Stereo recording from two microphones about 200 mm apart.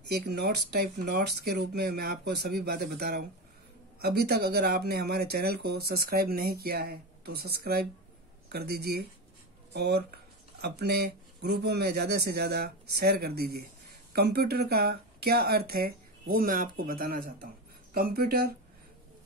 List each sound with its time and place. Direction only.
0.1 s speech: 55° right (ahead or behind)